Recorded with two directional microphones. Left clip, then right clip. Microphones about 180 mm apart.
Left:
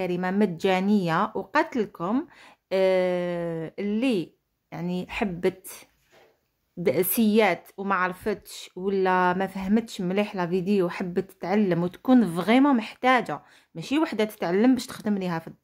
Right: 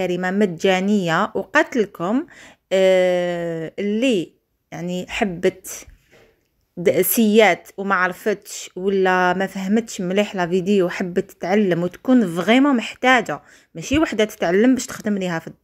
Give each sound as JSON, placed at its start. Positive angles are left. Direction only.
{"t": 0.0, "sound": "speech", "side_deg": -10}